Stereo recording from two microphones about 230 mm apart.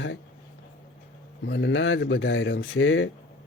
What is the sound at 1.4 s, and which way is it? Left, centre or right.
Speech, left.